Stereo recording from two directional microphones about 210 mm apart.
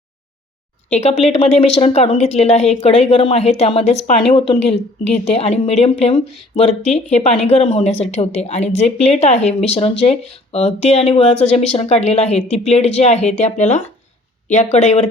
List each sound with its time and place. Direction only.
0.9 s a woman's voice: 30° left (ahead or behind)